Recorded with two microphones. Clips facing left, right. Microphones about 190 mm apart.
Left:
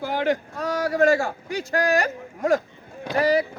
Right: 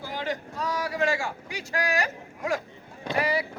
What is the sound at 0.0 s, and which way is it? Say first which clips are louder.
A man's voice: left 8 dB; 60° left (ahead or behind).